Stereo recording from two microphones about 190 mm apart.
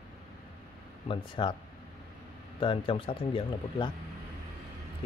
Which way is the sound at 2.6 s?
25° left (ahead or behind).